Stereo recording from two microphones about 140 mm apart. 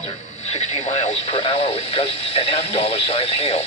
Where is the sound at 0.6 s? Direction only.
55° left (ahead or behind).